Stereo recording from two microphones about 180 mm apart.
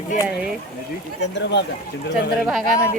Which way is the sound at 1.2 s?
75° left (ahead or behind).